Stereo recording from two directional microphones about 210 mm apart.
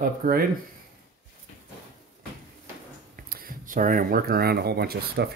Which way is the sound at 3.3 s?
45° right (ahead or behind).